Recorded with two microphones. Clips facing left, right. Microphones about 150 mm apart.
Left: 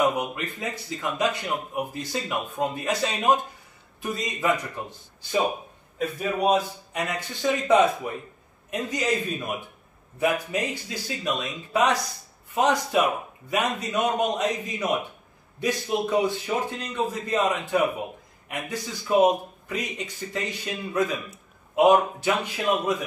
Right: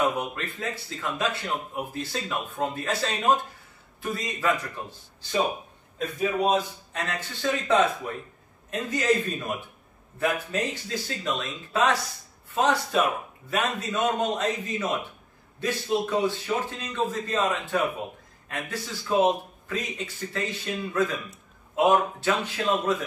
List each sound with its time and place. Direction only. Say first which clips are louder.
0.0 s a man's voice: left 2 dB; 15° left (ahead or behind)
5.9 s speech: even; 5° left (ahead or behind)